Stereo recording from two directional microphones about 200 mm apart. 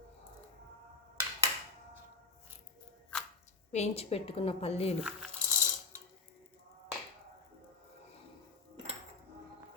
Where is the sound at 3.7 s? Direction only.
30° left (ahead or behind).